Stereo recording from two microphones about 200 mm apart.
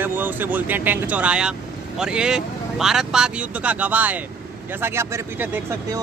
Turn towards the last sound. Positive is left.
turn(degrees=-10)  # may be behind; listen again after turning